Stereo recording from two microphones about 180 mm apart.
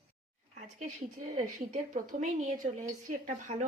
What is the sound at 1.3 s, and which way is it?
A woman's voice, 45° right (ahead or behind).